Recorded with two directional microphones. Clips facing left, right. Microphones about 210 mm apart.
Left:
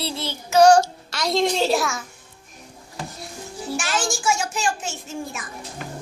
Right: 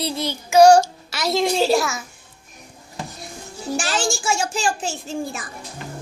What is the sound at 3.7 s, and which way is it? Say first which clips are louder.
A child's voice: right 2 dB; 30° right (ahead or behind).